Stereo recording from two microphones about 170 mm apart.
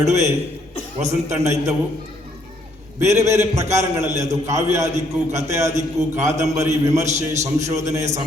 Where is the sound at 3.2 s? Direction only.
15° right (ahead or behind).